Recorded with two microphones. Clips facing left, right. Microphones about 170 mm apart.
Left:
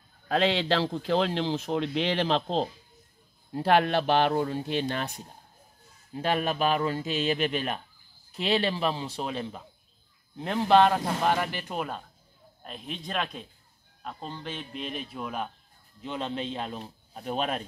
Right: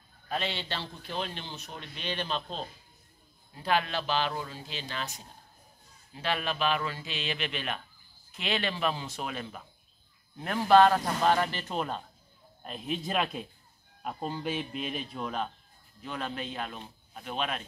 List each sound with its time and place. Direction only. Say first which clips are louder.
0.3 s a man's voice: left 9 dB; 90° left
3.5 s speech: left 7 dB; 65° left (ahead or behind)
6.1 s a man's voice: left 5 dB; 45° left (ahead or behind); by 15.5 s 10° left (ahead or behind)
16.0 s a man's voice: left 4 dB; 25° left (ahead or behind); by 17.6 s 40° left (ahead or behind)